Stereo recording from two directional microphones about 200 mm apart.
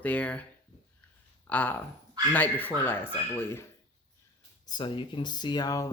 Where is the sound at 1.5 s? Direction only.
10° left (ahead or behind).